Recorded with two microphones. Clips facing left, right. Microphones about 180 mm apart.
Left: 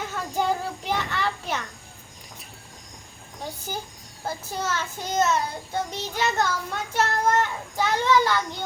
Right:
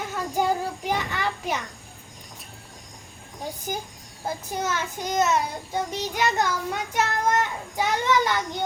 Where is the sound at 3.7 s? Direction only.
15° right (ahead or behind).